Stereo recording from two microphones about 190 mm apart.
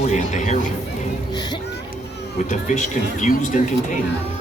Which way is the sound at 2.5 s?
40° left (ahead or behind).